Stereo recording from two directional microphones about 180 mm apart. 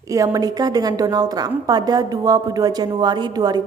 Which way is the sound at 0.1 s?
20° right (ahead or behind).